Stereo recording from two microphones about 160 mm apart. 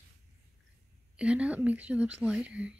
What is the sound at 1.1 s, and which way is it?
Speech, 5° right (ahead or behind).